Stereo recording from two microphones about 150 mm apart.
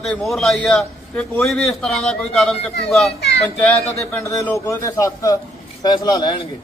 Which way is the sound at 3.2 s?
90° left.